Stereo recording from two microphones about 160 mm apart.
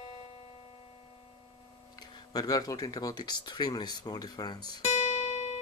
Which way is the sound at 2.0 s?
25° left (ahead or behind).